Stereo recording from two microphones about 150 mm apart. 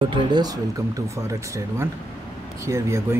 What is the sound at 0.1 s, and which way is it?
Speech, 30° right (ahead or behind).